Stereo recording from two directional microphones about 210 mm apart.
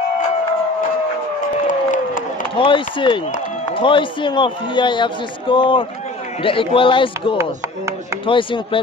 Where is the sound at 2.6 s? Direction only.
25° left (ahead or behind).